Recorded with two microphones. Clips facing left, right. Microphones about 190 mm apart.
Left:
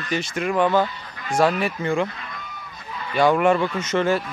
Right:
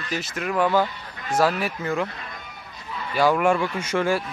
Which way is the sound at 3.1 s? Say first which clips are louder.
Left 2 dB; 5° right (ahead or behind).